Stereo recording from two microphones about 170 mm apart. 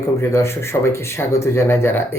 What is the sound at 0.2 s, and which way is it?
Speech, 15° left (ahead or behind).